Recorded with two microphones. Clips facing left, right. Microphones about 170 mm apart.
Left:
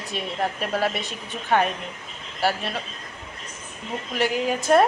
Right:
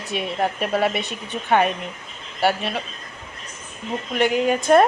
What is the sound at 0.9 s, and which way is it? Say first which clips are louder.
Speech: right 4 dB; 65° right (ahead or behind).